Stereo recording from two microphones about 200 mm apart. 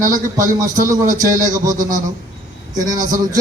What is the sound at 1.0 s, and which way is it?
Speech, 40° right (ahead or behind).